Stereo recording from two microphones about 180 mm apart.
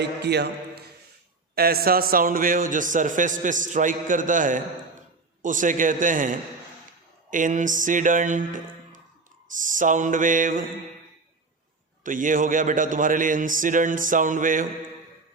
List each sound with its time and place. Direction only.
0.0 s a man's voice: 70° right (ahead or behind); by 10.7 s 50° right (ahead or behind)
12.0 s a man's voice: 45° right (ahead or behind)